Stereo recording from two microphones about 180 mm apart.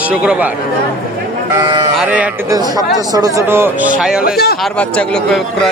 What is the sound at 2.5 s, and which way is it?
Speech, 20° right (ahead or behind).